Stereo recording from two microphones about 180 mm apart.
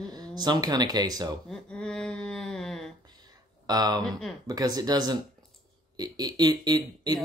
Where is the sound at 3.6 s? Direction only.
20° right (ahead or behind).